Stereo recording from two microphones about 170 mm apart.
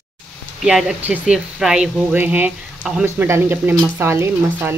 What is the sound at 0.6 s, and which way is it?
Speech, 5° right (ahead or behind).